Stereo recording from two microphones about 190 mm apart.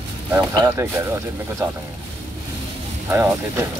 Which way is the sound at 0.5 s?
15° right (ahead or behind).